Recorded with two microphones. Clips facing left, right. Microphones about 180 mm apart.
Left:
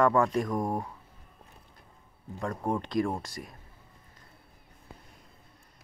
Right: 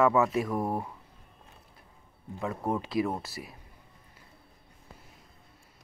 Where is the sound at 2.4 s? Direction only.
5° right (ahead or behind).